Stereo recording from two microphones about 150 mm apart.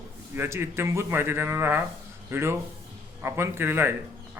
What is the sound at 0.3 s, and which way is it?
A man's voice, 15° right (ahead or behind).